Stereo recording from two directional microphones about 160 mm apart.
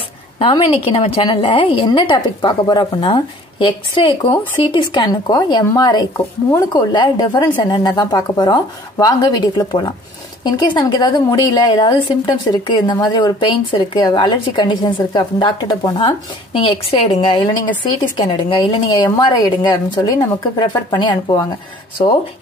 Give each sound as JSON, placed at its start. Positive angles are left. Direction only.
{"t": 0.4, "sound": "a woman's voice", "side_deg": 35}